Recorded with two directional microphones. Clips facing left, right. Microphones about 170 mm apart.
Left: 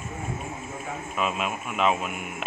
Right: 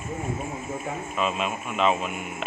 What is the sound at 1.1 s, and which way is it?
Speech, 5° left (ahead or behind).